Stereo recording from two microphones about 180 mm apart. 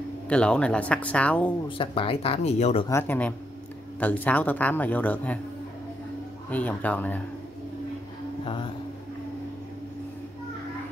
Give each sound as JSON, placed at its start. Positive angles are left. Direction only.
{"t": 0.3, "sound": "speech", "side_deg": 5}
{"t": 1.8, "sound": "speech", "side_deg": 30}
{"t": 2.9, "sound": "speech", "side_deg": 10}
{"t": 6.5, "sound": "speech", "side_deg": 10}
{"t": 8.5, "sound": "speech", "side_deg": 25}